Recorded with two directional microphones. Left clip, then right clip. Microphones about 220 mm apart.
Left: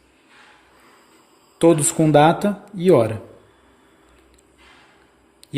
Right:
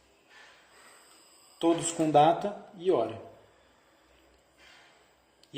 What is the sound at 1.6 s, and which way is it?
Speech, 40° left (ahead or behind).